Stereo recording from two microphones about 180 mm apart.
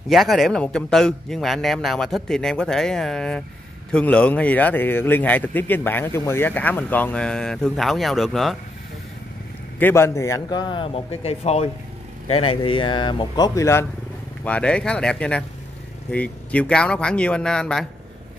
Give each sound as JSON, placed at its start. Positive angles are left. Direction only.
{"t": 0.1, "sound": "a man's voice", "side_deg": 0}
{"t": 9.8, "sound": "a man's voice", "side_deg": 10}